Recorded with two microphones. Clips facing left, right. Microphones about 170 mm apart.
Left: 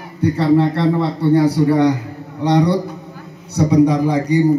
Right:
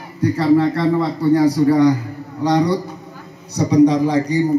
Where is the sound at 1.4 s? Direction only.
65° left (ahead or behind).